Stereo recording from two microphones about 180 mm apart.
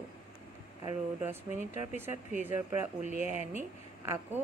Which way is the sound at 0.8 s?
10° right (ahead or behind).